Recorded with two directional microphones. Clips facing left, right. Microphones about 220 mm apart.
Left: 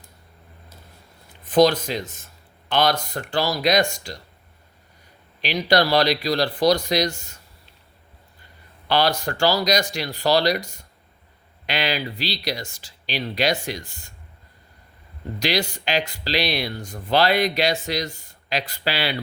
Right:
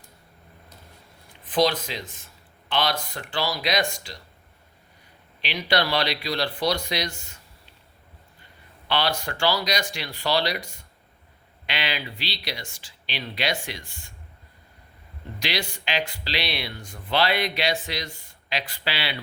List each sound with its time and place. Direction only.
1.5 s speech: 45° left (ahead or behind)
5.4 s speech: 40° left (ahead or behind)
8.9 s speech: 40° left (ahead or behind)
15.4 s speech: 40° left (ahead or behind)